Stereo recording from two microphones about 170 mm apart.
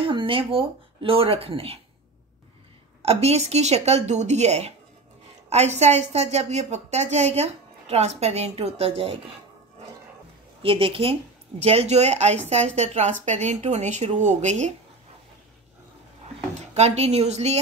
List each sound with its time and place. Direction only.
0.0 s a woman's voice: 30° right (ahead or behind)
3.0 s a woman's voice: 35° right (ahead or behind)
10.6 s a woman's voice: 30° right (ahead or behind)
16.7 s a woman's voice: 40° right (ahead or behind)